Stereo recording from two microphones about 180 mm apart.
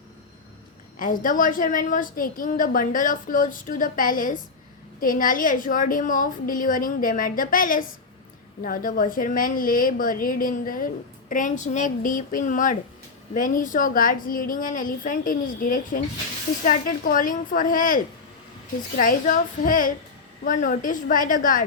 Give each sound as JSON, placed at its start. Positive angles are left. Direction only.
{"t": 0.9, "sound": "a woman's voice", "side_deg": 50}